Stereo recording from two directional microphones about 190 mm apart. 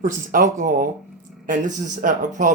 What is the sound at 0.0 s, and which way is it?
Speech, 45° right (ahead or behind).